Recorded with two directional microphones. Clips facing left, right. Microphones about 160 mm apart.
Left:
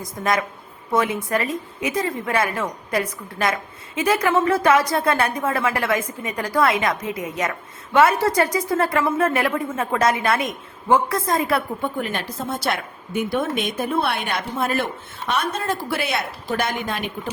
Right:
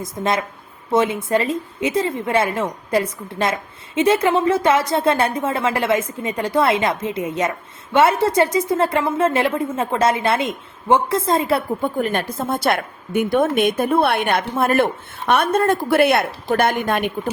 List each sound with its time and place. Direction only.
0.2 s a woman's voice: 25° right (ahead or behind)
11.9 s a woman's voice: 45° right (ahead or behind)